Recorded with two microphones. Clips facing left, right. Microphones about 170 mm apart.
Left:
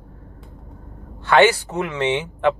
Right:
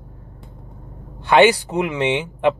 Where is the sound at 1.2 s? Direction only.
15° right (ahead or behind).